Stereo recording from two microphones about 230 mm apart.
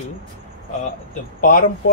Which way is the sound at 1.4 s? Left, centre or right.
Left.